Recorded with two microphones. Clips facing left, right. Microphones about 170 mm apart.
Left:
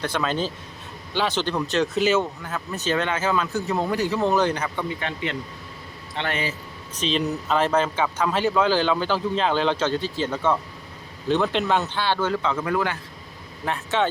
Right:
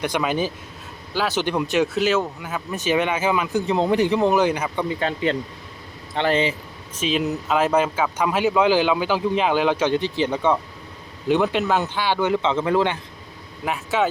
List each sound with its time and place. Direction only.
0.0 s speech: 15° right (ahead or behind)
2.5 s speech: 10° right (ahead or behind)
4.9 s speech: 35° right (ahead or behind)
7.0 s speech: 5° right (ahead or behind); by 13.0 s 25° right (ahead or behind)
13.7 s speech: 5° right (ahead or behind)